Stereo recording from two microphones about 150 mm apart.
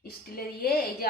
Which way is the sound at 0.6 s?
90° left.